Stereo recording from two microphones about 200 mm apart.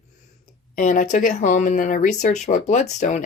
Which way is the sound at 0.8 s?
40° left (ahead or behind).